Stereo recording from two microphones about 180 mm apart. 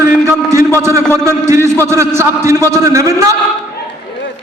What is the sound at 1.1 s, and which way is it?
A man's voice, 15° right (ahead or behind).